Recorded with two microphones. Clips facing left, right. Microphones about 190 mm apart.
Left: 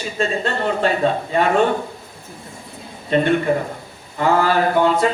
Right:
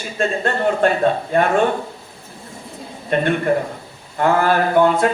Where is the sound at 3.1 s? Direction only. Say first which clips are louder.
Left 1 dB; 55° right (ahead or behind).